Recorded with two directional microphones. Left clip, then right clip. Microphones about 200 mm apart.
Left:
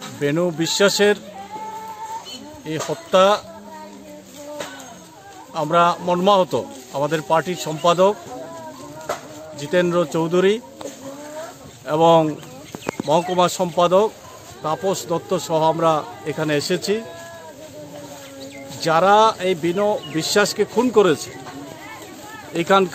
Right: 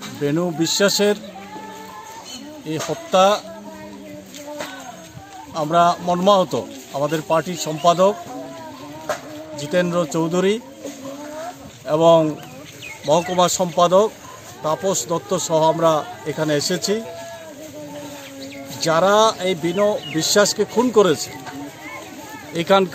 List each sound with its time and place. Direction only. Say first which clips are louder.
0.2 s a man's voice: left 1 dB; centre (ahead or behind)
2.7 s a man's voice: left 1 dB; 5° right (ahead or behind)
5.5 s a man's voice: right 1 dB; centre (ahead or behind)
9.6 s a man's voice: left 1 dB; 5° left (ahead or behind)
11.8 s a man's voice: right 1 dB; 5° left (ahead or behind)
13.4 s a man's voice: right 1 dB; centre (ahead or behind)
18.8 s a man's voice: left 1 dB; centre (ahead or behind)
22.5 s a man's voice: even; centre (ahead or behind)